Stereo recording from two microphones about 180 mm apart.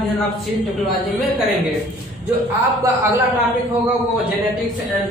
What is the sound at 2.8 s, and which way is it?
Speech, 15° right (ahead or behind).